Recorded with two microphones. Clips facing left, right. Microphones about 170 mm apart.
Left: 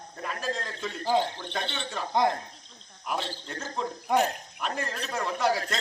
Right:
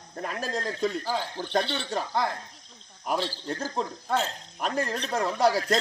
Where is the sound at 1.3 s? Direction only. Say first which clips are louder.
Right 6 dB; 35° right (ahead or behind).